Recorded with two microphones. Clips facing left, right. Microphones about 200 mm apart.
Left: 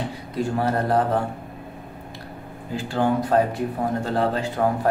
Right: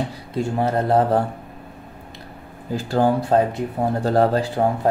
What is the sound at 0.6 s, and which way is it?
Speech, 25° right (ahead or behind).